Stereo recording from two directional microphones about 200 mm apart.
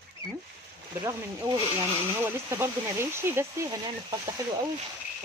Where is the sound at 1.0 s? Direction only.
15° right (ahead or behind).